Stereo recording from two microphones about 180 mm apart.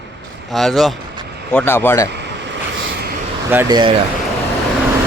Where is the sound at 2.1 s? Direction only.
70° right (ahead or behind).